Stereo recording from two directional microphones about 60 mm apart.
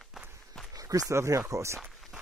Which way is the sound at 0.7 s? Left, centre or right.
Right.